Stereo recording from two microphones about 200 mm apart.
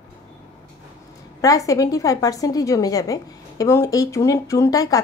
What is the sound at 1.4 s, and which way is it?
A woman's voice, 15° left (ahead or behind).